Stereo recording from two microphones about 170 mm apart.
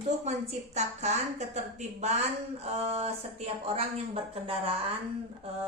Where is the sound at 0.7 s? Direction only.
40° right (ahead or behind).